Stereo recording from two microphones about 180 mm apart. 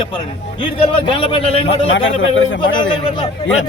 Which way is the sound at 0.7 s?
30° left (ahead or behind).